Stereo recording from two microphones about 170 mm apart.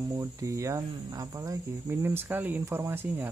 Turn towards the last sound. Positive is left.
turn(degrees=-15)  # may be behind; listen again after turning